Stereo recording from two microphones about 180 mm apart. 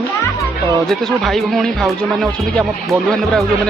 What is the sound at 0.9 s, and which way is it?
Speech, centre (ahead or behind).